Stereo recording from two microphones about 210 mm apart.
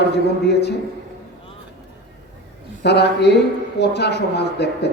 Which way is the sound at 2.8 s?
50° left (ahead or behind).